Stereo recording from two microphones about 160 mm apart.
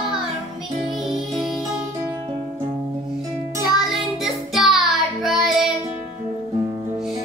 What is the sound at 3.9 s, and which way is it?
Music, centre (ahead or behind).